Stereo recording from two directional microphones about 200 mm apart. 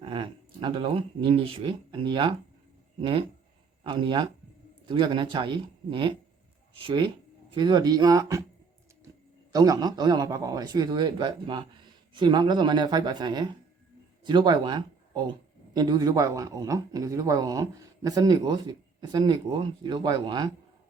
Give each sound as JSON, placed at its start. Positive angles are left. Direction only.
{"t": 0.0, "sound": "a man's voice", "side_deg": -25}
{"t": 9.5, "sound": "a man's voice", "side_deg": -20}